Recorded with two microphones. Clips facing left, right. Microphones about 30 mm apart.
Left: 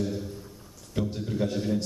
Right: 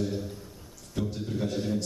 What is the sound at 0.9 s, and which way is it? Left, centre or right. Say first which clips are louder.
Speech: left 2 dB; centre.